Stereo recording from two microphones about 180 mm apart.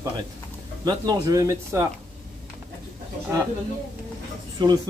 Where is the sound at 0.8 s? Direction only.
20° right (ahead or behind).